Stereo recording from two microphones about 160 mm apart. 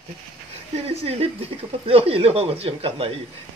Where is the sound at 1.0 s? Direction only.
40° right (ahead or behind).